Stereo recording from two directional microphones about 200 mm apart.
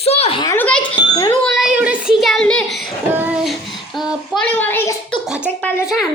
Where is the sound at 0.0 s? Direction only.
30° left (ahead or behind).